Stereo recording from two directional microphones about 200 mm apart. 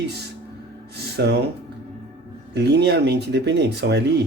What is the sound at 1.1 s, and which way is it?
Speech, 55° right (ahead or behind).